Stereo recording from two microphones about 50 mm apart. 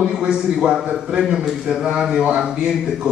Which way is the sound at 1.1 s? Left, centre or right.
Centre.